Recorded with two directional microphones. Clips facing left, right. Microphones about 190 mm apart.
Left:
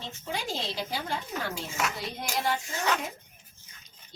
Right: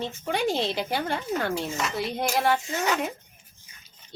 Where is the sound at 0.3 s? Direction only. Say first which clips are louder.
Right 8 dB; 60° right (ahead or behind).